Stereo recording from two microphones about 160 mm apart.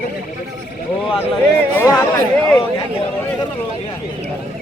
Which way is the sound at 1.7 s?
20° left (ahead or behind).